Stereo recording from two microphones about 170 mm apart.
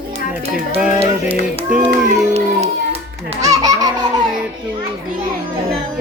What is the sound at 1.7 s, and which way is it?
Speech, 10° right (ahead or behind).